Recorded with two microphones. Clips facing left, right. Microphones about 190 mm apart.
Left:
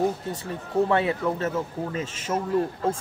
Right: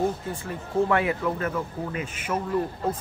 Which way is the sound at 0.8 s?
25° left (ahead or behind).